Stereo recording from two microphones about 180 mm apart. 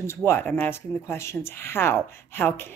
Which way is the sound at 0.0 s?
15° left (ahead or behind).